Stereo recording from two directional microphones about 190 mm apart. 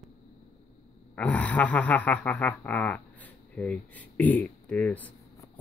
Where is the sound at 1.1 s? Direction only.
10° left (ahead or behind).